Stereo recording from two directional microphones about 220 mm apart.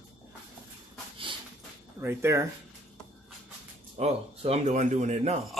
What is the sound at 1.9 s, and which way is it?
Speech, 10° right (ahead or behind).